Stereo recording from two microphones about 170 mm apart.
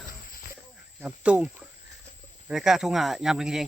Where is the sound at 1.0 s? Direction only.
5° right (ahead or behind).